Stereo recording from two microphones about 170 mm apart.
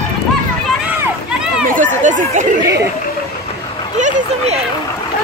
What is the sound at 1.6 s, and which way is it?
Speech, 50° right (ahead or behind).